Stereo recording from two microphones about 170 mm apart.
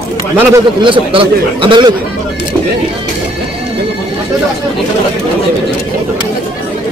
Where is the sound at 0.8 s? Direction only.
30° right (ahead or behind).